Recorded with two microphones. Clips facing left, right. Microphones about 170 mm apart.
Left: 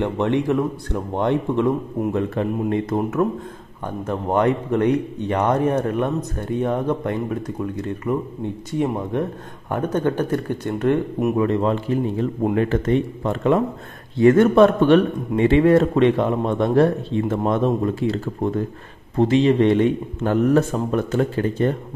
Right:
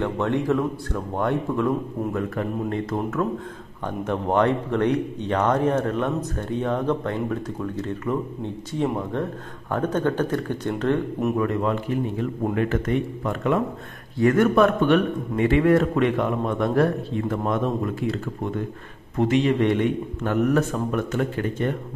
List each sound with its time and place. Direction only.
0.5 s a man's voice: 15° left (ahead or behind)
4.0 s speech: 10° left (ahead or behind)
11.3 s a man's voice: 30° left (ahead or behind)